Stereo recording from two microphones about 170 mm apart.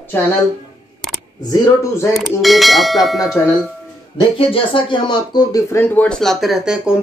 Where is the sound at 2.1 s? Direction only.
Centre (ahead or behind).